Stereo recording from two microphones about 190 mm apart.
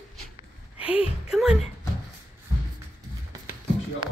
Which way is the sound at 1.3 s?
5° right (ahead or behind).